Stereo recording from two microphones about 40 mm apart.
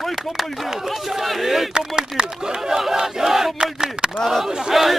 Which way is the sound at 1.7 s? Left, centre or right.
Centre.